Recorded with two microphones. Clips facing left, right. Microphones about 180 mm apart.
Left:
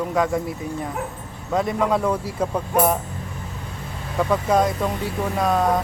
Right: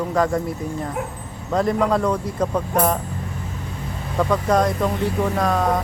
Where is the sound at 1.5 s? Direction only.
5° left (ahead or behind).